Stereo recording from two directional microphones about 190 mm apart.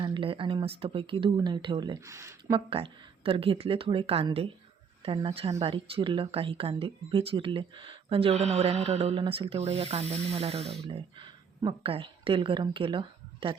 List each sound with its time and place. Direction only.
0.0 s speech: 25° right (ahead or behind)
2.5 s speech: 30° right (ahead or behind)